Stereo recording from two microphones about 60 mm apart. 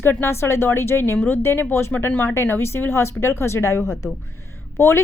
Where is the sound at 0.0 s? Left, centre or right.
Left.